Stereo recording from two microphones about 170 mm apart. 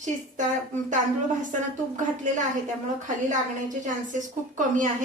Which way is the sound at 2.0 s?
50° right (ahead or behind).